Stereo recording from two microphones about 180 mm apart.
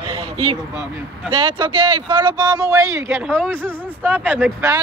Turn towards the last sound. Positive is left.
turn(degrees=-10)  # may be behind; listen again after turning